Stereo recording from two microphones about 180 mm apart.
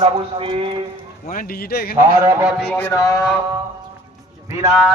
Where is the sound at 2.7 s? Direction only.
10° left (ahead or behind).